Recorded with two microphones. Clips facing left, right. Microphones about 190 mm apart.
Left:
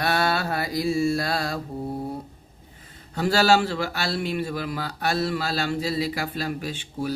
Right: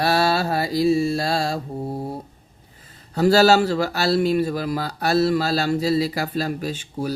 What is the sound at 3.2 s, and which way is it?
A man's voice, 40° right (ahead or behind).